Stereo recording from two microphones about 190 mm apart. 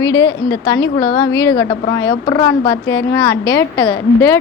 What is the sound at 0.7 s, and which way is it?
Speech, 20° left (ahead or behind).